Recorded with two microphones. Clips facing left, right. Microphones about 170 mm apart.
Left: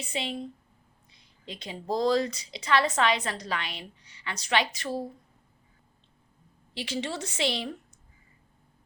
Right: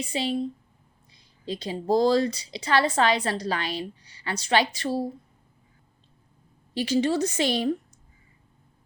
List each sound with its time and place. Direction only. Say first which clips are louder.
0.0 s speech: right 7 dB; 35° right (ahead or behind)
6.7 s speech: right 10 dB; 40° right (ahead or behind)